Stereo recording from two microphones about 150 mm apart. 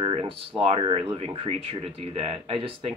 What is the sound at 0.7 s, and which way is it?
Speech, 35° right (ahead or behind).